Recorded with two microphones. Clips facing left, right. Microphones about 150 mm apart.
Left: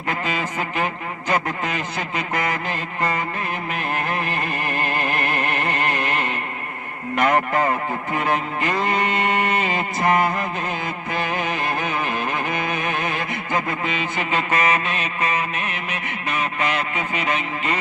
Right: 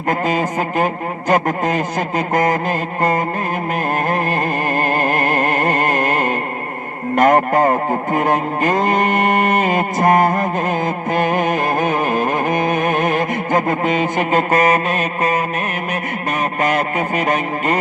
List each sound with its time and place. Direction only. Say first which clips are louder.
0.1 s speech: right 7 dB; 45° right (ahead or behind)
1.3 s a sound: right 7 dB; 40° right (ahead or behind)
7.2 s speech: right 6 dB; 45° right (ahead or behind)
16.6 s speech: right 6 dB; 45° right (ahead or behind)